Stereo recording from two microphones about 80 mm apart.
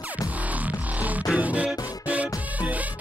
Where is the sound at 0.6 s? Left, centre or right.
Centre.